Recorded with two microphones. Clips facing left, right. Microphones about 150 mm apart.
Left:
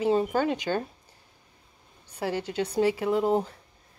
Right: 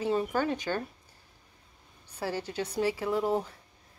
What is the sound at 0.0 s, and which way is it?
Speech, 20° left (ahead or behind).